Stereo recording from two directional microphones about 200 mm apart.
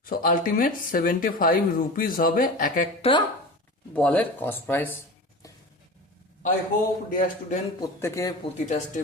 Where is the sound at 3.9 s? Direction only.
5° left (ahead or behind).